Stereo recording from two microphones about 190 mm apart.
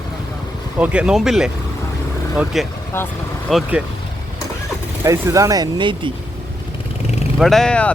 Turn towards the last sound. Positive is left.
turn(degrees=5)  # may be behind; listen again after turning